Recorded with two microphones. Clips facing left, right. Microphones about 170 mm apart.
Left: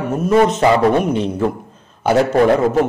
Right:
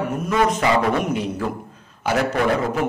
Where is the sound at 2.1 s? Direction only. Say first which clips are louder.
Left 7 dB; 35° left (ahead or behind).